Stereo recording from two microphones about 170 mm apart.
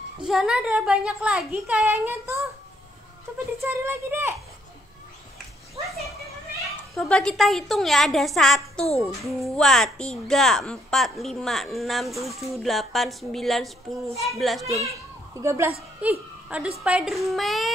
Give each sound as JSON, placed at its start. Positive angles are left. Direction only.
{"t": 0.3, "sound": "a woman's voice", "side_deg": -5}
{"t": 3.6, "sound": "a woman's voice", "side_deg": -15}
{"t": 6.6, "sound": "a woman's voice", "side_deg": 0}
{"t": 15.3, "sound": "a woman's voice", "side_deg": -15}